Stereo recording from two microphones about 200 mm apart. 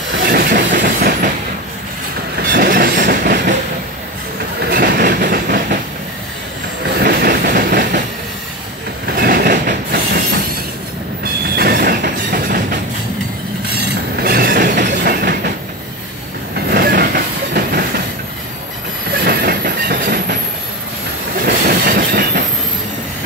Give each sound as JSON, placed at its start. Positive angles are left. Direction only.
{"t": 0.2, "sound": "train", "side_deg": -45}
{"t": 2.5, "sound": "train", "side_deg": -50}
{"t": 4.6, "sound": "train", "side_deg": -50}
{"t": 7.0, "sound": "train", "side_deg": -50}
{"t": 9.1, "sound": "train", "side_deg": -50}
{"t": 11.5, "sound": "train", "side_deg": -50}
{"t": 14.1, "sound": "train", "side_deg": -50}
{"t": 16.5, "sound": "train", "side_deg": -50}
{"t": 19.2, "sound": "train", "side_deg": -50}
{"t": 21.5, "sound": "train", "side_deg": -50}